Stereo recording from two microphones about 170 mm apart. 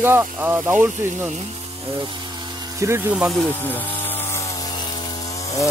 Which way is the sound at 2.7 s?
15° right (ahead or behind).